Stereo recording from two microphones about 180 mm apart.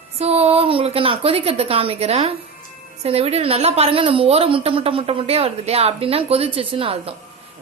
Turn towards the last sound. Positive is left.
turn(degrees=-30)  # may be behind; listen again after turning